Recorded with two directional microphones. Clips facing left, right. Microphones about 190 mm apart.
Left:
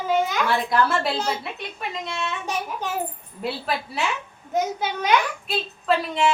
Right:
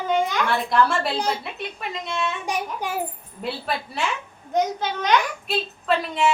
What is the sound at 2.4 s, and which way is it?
Speech, 15° right (ahead or behind).